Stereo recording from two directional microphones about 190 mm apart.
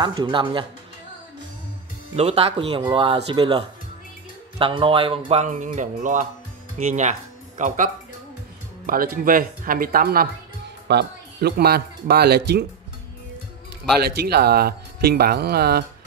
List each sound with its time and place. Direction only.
0.0 s speech: 20° right (ahead or behind)
2.1 s speech: 30° right (ahead or behind); by 12.6 s 55° right (ahead or behind)
14.0 s speech: 55° right (ahead or behind)